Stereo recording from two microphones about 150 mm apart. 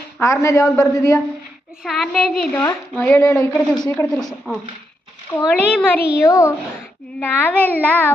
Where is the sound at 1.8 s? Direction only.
Centre (ahead or behind).